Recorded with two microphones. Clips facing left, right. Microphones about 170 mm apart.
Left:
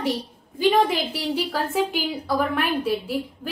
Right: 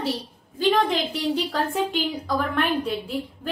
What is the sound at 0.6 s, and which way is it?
A woman's voice, 10° left (ahead or behind).